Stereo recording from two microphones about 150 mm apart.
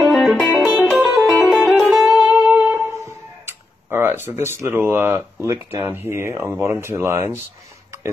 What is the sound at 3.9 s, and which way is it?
Speech, 15° right (ahead or behind).